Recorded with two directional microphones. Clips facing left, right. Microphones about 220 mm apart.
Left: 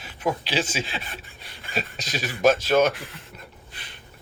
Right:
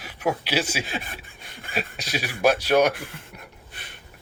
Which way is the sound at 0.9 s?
45° right (ahead or behind).